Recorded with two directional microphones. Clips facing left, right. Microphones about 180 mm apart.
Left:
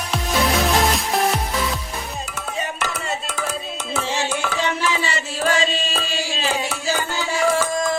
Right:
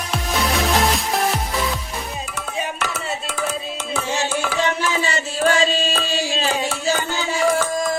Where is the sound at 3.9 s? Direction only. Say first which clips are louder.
Right 1 dB; 5° right (ahead or behind).